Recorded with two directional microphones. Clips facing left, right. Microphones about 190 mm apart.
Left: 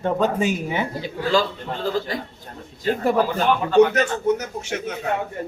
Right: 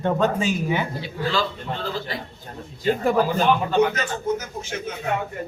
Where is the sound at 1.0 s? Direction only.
45° left (ahead or behind).